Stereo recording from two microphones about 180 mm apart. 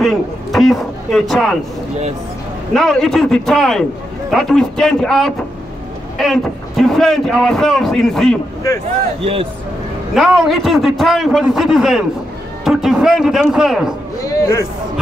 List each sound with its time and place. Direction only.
0.0 s a man's voice: centre (ahead or behind)
2.7 s a man's voice: centre (ahead or behind)
9.2 s speech: 30° right (ahead or behind)
10.1 s a man's voice: centre (ahead or behind)
14.2 s a man's voice: 20° left (ahead or behind)